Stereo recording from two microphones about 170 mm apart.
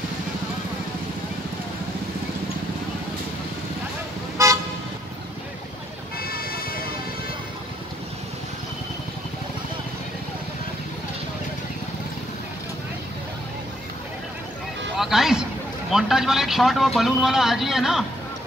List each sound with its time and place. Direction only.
4.4 s car: 20° right (ahead or behind)
6.1 s vehicle: 60° left (ahead or behind)
15.0 s music: 5° right (ahead or behind)
15.9 s a man's voice: centre (ahead or behind)